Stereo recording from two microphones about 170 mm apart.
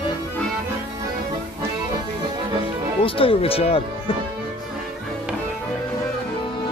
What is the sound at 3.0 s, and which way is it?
Speech, 30° left (ahead or behind).